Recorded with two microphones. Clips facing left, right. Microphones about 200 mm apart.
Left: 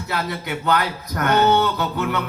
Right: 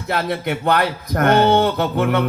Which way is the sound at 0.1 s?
55° right (ahead or behind).